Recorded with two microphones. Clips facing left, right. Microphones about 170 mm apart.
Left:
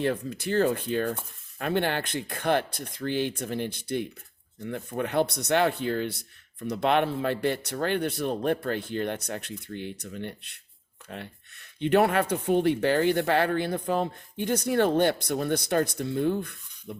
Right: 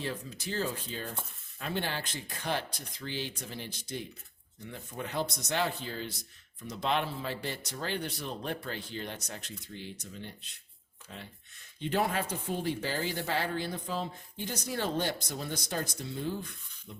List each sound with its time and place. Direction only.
0.0 s speech: 60° left (ahead or behind)